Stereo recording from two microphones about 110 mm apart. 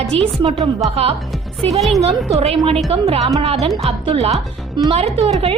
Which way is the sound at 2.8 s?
65° right (ahead or behind).